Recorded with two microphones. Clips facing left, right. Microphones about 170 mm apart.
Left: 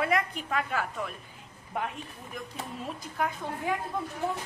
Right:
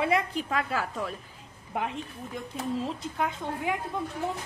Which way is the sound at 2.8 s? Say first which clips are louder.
Right 2 dB; 25° right (ahead or behind).